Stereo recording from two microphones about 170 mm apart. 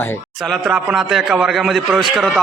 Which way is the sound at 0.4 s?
Centre (ahead or behind).